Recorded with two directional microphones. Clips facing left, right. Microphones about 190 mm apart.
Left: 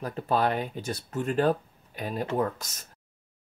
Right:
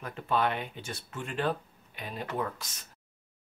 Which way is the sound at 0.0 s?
40° left (ahead or behind).